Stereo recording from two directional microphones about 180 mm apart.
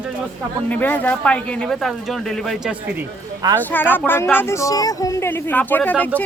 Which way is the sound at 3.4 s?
20° right (ahead or behind).